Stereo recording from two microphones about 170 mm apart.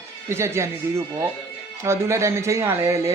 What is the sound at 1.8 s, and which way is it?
A man's voice, 15° right (ahead or behind).